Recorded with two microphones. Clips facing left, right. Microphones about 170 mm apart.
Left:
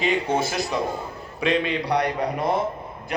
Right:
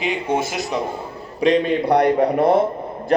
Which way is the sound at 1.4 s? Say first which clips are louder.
Right 6 dB; 40° right (ahead or behind).